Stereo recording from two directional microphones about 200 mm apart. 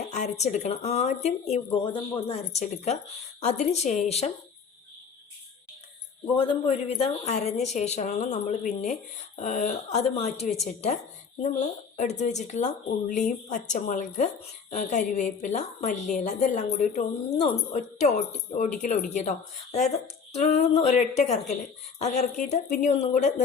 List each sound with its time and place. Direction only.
0.1 s a woman's voice: 35° left (ahead or behind)
6.3 s a woman's voice: 30° left (ahead or behind)
11.9 s a woman's voice: 35° left (ahead or behind)
20.3 s a woman's voice: 35° left (ahead or behind)